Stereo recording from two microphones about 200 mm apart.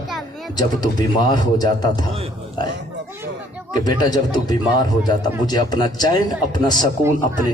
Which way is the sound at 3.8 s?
20° left (ahead or behind).